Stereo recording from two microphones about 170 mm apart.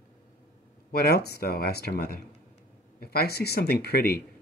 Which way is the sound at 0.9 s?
65° left (ahead or behind).